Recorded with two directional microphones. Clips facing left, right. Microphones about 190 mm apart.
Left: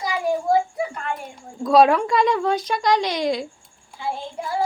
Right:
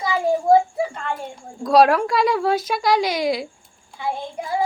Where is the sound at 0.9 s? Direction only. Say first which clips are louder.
Right 1 dB; 25° right (ahead or behind).